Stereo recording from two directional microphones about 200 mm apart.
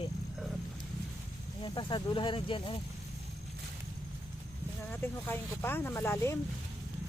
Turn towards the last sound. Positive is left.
turn(degrees=15)  # may be behind; listen again after turning